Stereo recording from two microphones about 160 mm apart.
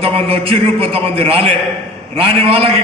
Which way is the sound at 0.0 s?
35° right (ahead or behind).